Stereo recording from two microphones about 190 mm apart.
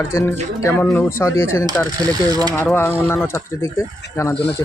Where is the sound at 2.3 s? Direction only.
20° right (ahead or behind).